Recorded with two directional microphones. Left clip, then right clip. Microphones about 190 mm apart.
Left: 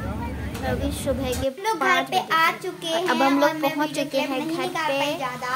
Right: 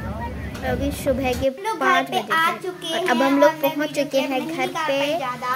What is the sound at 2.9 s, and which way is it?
A woman's voice, 15° right (ahead or behind).